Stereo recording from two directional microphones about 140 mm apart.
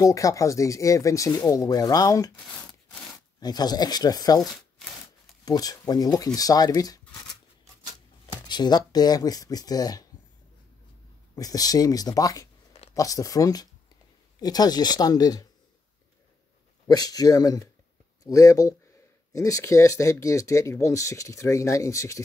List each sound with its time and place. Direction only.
0.0 s speech: 25° left (ahead or behind)
3.3 s speech: 30° left (ahead or behind)
8.5 s speech: 30° left (ahead or behind)
11.3 s speech: 25° left (ahead or behind)
16.8 s speech: 30° left (ahead or behind)